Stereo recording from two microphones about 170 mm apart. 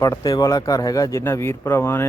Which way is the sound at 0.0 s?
20° left (ahead or behind).